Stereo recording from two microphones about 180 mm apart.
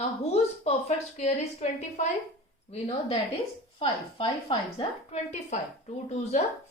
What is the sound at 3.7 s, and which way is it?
A woman's voice, 30° left (ahead or behind).